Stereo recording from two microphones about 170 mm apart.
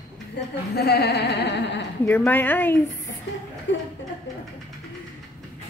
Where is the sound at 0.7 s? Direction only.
70° left (ahead or behind); by 1.9 s 90° left.